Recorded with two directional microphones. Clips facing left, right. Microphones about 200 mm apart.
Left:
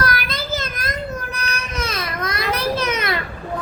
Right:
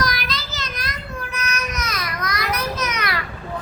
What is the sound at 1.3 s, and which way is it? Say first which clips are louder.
Baby cry: even; 35° left (ahead or behind).